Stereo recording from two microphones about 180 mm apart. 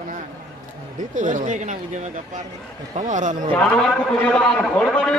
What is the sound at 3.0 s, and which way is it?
Speech, 45° right (ahead or behind).